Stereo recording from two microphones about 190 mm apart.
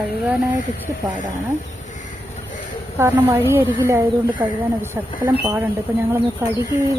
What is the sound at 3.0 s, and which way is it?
Speech, 10° right (ahead or behind).